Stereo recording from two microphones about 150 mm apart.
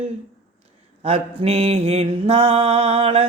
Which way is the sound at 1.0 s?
45° right (ahead or behind).